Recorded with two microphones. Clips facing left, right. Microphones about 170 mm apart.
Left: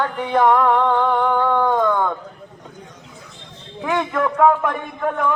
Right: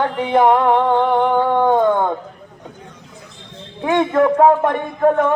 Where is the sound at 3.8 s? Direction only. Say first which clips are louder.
Right 5 dB; 25° right (ahead or behind).